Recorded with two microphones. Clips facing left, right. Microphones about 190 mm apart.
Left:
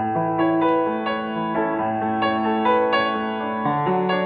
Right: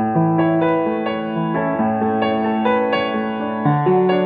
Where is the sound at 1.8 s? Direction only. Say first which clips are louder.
Right 5 dB; 55° right (ahead or behind).